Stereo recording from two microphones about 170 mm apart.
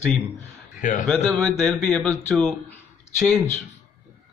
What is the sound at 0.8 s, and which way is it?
Speech, 50° left (ahead or behind).